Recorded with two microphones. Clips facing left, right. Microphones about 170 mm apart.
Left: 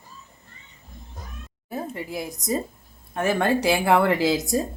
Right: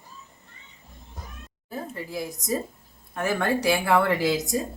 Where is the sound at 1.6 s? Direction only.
20° left (ahead or behind).